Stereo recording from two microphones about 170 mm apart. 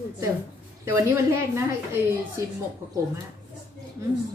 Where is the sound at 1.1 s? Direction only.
15° right (ahead or behind).